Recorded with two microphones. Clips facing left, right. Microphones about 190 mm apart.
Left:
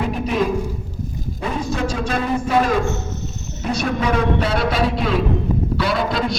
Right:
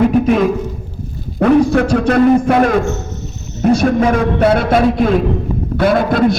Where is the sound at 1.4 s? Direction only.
65° right (ahead or behind).